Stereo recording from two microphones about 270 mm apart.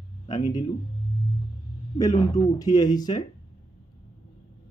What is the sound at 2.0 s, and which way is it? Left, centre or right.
Speech, centre.